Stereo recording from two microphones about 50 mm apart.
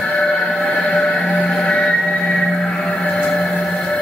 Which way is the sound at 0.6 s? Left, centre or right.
Centre.